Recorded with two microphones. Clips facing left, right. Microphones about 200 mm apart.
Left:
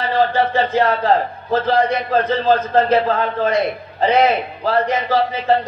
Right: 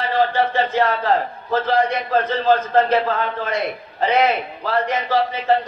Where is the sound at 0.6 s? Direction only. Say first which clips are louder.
Left 2 dB; 30° left (ahead or behind).